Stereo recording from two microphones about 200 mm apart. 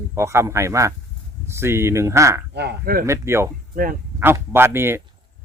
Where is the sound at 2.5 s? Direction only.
55° right (ahead or behind).